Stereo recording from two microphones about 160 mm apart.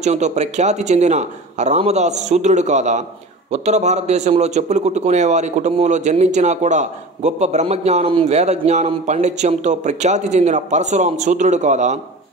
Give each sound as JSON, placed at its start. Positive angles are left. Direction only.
{"t": 0.0, "sound": "a man's voice", "side_deg": -45}